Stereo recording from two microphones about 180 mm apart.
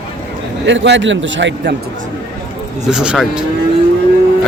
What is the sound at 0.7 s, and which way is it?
A man's voice, 85° right.